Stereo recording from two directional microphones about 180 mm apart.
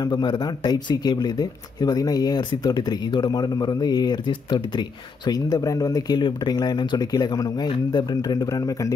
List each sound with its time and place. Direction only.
0.0 s speech: 25° left (ahead or behind)